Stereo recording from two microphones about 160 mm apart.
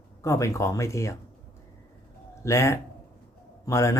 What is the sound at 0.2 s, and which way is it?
Speech, 20° left (ahead or behind).